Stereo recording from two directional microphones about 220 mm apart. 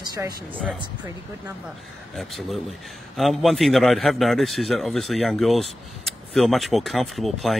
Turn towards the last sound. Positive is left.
turn(degrees=0)  # may be behind; listen again after turning